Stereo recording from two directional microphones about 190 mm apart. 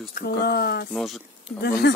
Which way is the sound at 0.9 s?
Centre (ahead or behind).